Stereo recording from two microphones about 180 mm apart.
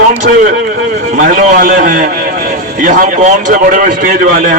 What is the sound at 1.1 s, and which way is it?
A man's voice, 45° right (ahead or behind).